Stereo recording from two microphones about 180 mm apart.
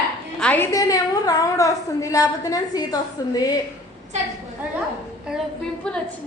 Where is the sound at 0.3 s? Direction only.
10° left (ahead or behind).